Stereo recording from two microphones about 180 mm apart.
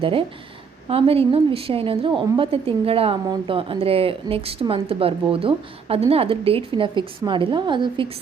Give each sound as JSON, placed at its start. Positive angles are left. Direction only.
{"t": 0.0, "sound": "a woman's voice", "side_deg": -30}